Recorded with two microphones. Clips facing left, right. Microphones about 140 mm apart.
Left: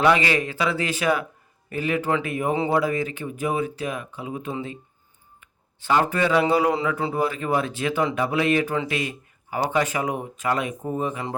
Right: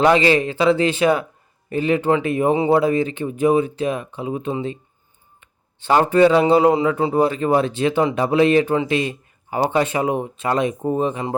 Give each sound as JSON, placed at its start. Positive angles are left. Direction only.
{"t": 0.0, "sound": "speech", "side_deg": -30}